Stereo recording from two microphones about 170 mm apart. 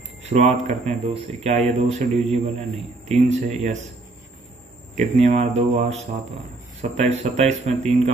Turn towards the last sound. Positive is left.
turn(degrees=-40)  # may be behind; listen again after turning